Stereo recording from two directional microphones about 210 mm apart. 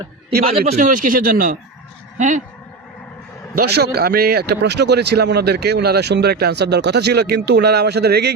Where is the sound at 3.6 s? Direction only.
50° right (ahead or behind).